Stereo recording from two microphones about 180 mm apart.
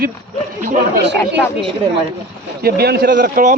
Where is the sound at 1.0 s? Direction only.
70° right (ahead or behind).